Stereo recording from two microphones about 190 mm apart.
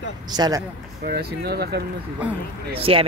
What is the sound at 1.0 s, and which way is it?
Speech, 55° right (ahead or behind).